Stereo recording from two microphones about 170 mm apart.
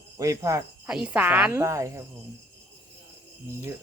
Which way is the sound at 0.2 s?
20° right (ahead or behind).